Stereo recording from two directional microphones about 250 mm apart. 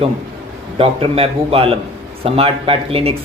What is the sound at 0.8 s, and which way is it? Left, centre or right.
Speech, right.